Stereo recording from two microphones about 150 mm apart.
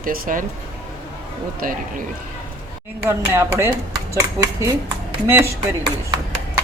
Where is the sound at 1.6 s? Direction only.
65° right (ahead or behind).